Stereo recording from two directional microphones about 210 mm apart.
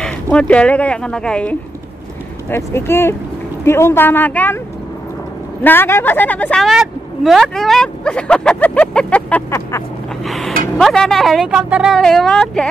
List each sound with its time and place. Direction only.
0.0 s a woman's voice: 5° left (ahead or behind)
5.6 s a woman's voice: 10° left (ahead or behind)
10.2 s a sound: centre (ahead or behind)
10.8 s a woman's voice: centre (ahead or behind)